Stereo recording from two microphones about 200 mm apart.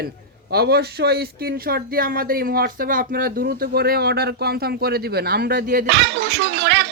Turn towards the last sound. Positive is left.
turn(degrees=-55)  # may be behind; listen again after turning